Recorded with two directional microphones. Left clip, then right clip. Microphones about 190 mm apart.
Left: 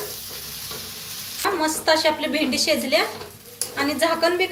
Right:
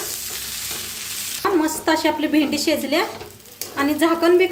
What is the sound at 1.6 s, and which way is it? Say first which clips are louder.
A woman's voice: left 1 dB; 45° right (ahead or behind).